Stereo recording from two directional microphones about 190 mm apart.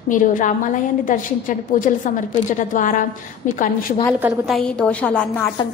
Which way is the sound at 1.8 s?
45° left (ahead or behind).